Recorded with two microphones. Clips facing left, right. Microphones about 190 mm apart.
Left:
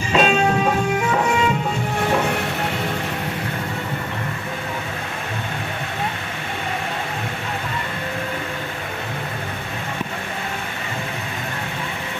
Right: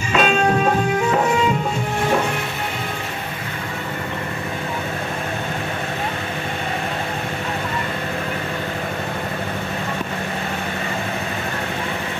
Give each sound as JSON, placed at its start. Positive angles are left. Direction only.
{"t": 0.1, "sound": "music", "side_deg": 30}